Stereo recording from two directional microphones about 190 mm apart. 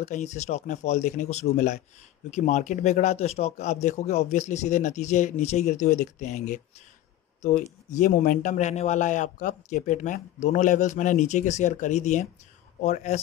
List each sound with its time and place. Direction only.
0.0 s a man's voice: 35° left (ahead or behind)
7.9 s a man's voice: 45° left (ahead or behind)